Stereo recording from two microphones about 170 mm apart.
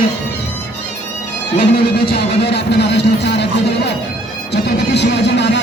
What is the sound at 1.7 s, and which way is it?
A man's voice, 65° left (ahead or behind).